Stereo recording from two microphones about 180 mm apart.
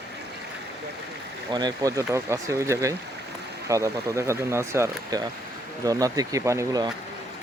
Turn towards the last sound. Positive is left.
turn(degrees=-20)  # may be behind; listen again after turning